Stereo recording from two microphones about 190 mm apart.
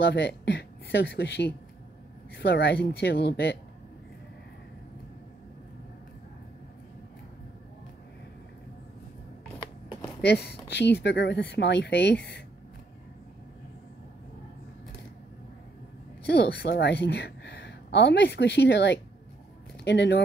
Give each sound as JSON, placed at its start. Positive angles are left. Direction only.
{"t": 0.0, "sound": "speech", "side_deg": 60}
{"t": 10.2, "sound": "speech", "side_deg": 55}
{"t": 16.3, "sound": "a woman's voice", "side_deg": 55}